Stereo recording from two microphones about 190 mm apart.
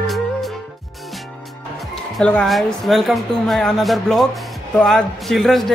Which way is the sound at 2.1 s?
5° left (ahead or behind).